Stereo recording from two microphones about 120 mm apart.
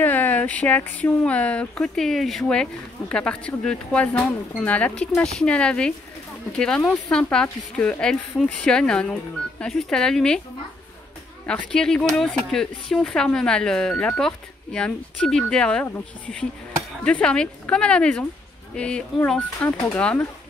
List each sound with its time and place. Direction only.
0.0 s speech: 15° left (ahead or behind)
11.4 s speech: 5° left (ahead or behind)